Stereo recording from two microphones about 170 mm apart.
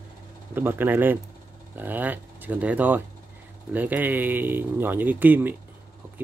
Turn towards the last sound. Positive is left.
turn(degrees=-10)  # may be behind; listen again after turning